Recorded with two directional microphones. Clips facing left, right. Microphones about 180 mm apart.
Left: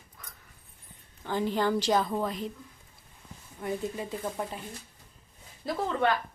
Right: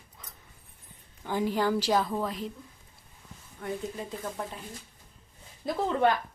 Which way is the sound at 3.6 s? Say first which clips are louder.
Left 2 dB; 10° left (ahead or behind).